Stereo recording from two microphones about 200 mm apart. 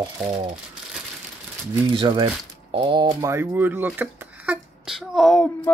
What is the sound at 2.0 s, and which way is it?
Speech, 25° right (ahead or behind).